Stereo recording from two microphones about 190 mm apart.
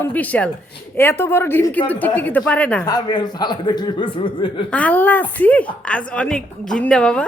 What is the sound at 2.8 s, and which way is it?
Speech, 20° left (ahead or behind).